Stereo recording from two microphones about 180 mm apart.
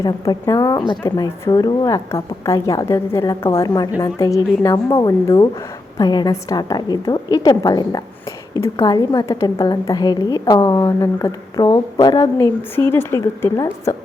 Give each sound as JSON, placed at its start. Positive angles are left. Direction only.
{"t": 0.0, "sound": "a woman's voice", "side_deg": 20}